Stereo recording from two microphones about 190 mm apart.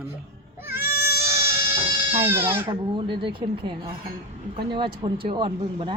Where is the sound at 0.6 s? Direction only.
10° right (ahead or behind).